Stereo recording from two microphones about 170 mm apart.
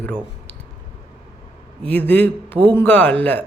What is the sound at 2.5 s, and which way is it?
Speech, 30° right (ahead or behind).